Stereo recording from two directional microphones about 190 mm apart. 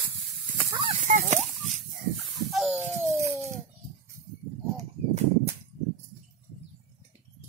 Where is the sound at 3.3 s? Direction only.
15° right (ahead or behind).